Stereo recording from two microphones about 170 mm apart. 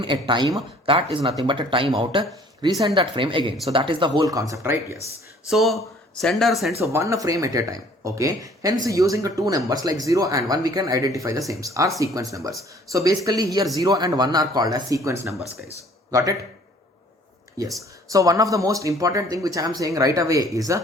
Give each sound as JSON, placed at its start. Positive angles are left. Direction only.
{"t": 0.0, "sound": "speech", "side_deg": -30}
{"t": 5.5, "sound": "speech", "side_deg": 0}
{"t": 6.7, "sound": "speech", "side_deg": -15}
{"t": 18.1, "sound": "speech", "side_deg": -20}